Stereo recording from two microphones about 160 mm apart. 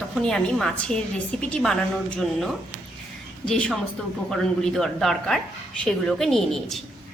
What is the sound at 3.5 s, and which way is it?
A woman's voice, 5° left (ahead or behind).